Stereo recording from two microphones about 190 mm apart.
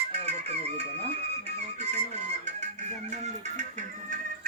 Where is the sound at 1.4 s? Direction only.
35° right (ahead or behind).